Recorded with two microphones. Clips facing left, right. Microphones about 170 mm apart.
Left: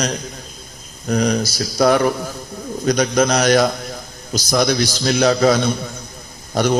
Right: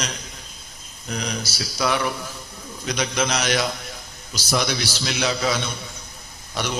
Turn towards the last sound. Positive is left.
turn(degrees=45)  # may be behind; listen again after turning